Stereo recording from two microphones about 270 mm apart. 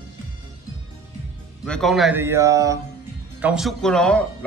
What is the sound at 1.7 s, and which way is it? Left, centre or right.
Speech, centre.